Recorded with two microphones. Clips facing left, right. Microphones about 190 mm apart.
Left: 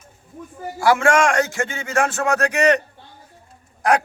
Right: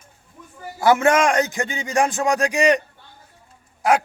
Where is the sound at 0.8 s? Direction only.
20° right (ahead or behind).